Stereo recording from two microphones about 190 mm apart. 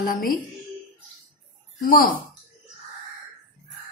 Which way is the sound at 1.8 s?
50° left (ahead or behind).